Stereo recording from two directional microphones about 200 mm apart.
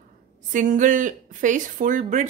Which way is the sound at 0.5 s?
40° right (ahead or behind).